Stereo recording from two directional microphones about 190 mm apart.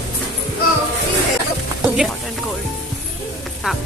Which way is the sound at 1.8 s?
5° right (ahead or behind).